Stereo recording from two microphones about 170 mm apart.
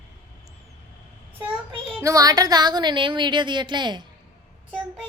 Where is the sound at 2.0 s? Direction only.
20° right (ahead or behind).